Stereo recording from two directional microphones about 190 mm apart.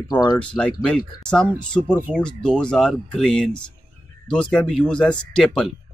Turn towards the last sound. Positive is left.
turn(degrees=5)  # may be behind; listen again after turning